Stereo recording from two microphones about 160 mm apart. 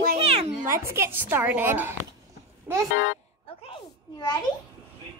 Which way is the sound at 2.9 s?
90° left.